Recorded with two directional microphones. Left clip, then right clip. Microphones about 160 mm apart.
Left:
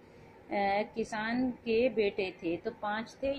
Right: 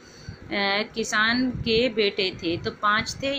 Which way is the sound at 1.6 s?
90° right.